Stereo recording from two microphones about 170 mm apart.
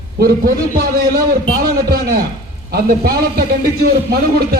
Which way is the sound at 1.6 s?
60° right (ahead or behind).